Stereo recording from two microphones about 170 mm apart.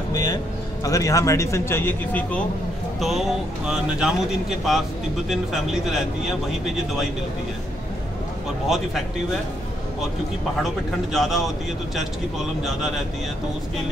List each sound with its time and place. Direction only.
0.1 s vehicle: 20° left (ahead or behind)
0.8 s a man's voice: 20° left (ahead or behind)
3.0 s speech: centre (ahead or behind)
8.6 s speech: centre (ahead or behind)
11.1 s speech: centre (ahead or behind)